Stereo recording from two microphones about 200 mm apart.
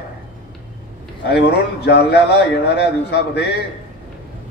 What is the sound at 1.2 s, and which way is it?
A man's voice, 55° left (ahead or behind).